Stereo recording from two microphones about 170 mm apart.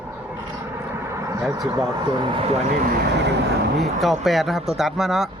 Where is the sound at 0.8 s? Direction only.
15° right (ahead or behind).